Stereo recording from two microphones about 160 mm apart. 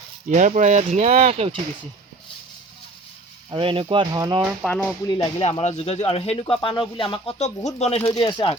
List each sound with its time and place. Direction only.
0.3 s speech: 50° right (ahead or behind)
3.5 s speech: 35° right (ahead or behind)
4.6 s speech: 5° left (ahead or behind)
5.0 s speech: 25° left (ahead or behind)
5.4 s speech: 45° left (ahead or behind)